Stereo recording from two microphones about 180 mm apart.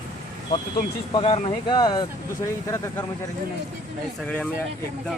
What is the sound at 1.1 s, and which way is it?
Speech, 30° left (ahead or behind).